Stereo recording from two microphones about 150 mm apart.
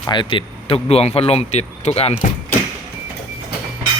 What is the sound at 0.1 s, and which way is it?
Speech, 35° left (ahead or behind).